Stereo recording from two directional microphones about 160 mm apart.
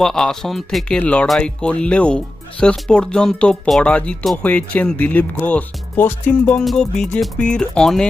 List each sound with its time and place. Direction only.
0.0 s speech: 5° left (ahead or behind)